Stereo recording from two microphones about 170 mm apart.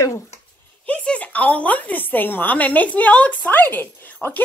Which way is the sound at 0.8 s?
10° left (ahead or behind).